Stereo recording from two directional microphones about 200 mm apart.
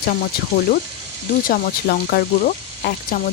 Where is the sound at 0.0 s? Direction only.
45° left (ahead or behind).